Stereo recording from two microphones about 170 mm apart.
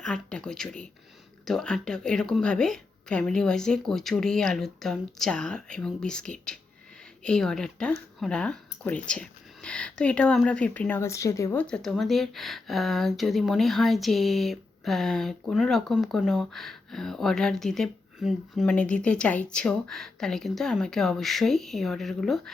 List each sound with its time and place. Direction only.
0.0 s speech: 5° left (ahead or behind)
11.6 s speech: 5° left (ahead or behind)